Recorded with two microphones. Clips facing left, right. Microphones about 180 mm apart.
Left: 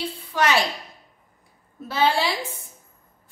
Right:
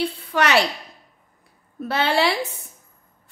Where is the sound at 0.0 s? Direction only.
65° right (ahead or behind).